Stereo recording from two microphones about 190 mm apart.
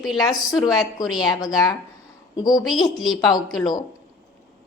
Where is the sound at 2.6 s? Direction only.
Centre (ahead or behind).